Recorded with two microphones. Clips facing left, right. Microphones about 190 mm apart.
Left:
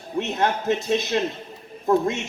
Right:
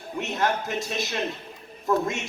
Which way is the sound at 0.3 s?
20° left (ahead or behind).